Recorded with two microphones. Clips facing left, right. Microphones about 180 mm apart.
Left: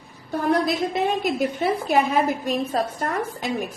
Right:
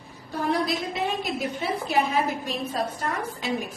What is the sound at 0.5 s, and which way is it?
Speech, centre (ahead or behind).